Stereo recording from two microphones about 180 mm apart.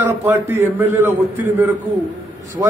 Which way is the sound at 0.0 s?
10° right (ahead or behind).